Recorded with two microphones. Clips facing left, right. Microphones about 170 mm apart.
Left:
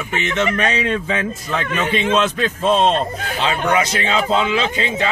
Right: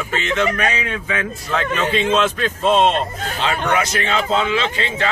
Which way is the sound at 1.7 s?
15° left (ahead or behind).